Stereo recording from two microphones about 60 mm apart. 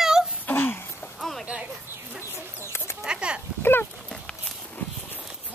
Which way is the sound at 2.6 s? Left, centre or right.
Left.